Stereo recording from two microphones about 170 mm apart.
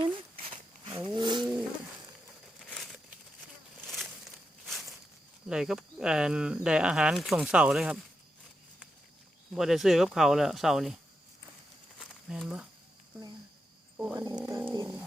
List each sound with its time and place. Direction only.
0.4 s a sound: 35° right (ahead or behind)
2.6 s crumpling: 5° left (ahead or behind)
4.6 s walk: centre (ahead or behind)
5.5 s speech: 5° right (ahead or behind)
9.6 s speech: centre (ahead or behind)
11.9 s a sound: centre (ahead or behind)
13.9 s wild animals: 10° right (ahead or behind)
14.3 s bird: 10° right (ahead or behind)